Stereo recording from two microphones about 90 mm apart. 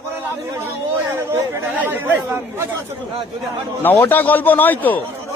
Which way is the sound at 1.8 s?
20° right (ahead or behind).